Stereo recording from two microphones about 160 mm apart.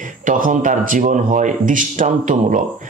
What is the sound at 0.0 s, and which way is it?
A man's voice, 55° right (ahead or behind).